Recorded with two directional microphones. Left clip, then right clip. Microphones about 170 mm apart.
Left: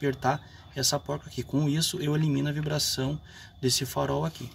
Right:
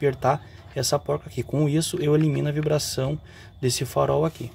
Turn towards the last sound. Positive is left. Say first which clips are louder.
# right 7 dB
turn(degrees=-40)  # may be behind; listen again after turning